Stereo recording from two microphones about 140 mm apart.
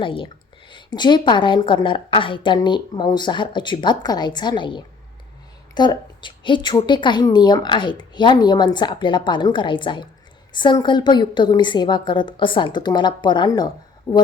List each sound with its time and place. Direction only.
0.0 s a woman's voice: 40° left (ahead or behind)